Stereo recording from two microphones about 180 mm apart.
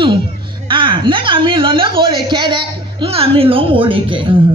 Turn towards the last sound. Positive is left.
turn(degrees=-30)  # may be behind; listen again after turning